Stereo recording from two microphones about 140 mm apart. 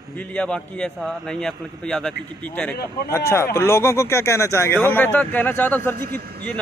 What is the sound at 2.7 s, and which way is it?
Speech, 90° left.